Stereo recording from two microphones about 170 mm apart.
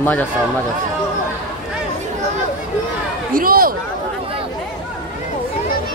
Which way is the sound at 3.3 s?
55° right (ahead or behind).